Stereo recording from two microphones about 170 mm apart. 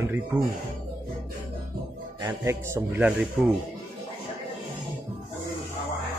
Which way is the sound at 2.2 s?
15° right (ahead or behind).